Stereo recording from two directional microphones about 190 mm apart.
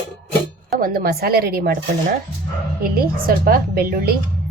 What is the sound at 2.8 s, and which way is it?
A woman's voice, 50° right (ahead or behind).